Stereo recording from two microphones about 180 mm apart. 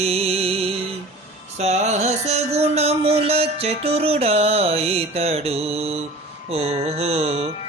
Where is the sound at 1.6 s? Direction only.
40° right (ahead or behind).